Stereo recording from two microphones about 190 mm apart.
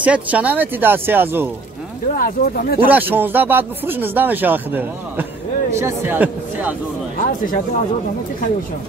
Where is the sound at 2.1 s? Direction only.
50° left (ahead or behind).